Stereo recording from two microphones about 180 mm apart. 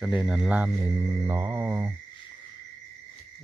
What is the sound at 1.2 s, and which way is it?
Mantra, 20° right (ahead or behind).